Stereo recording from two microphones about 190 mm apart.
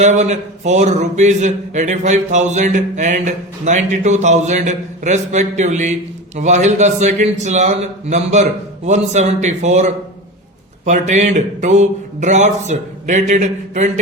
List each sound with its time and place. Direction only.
0.0 s a man's voice: 40° right (ahead or behind)